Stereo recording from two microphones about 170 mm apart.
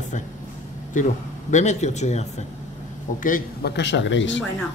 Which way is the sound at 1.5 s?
45° left (ahead or behind).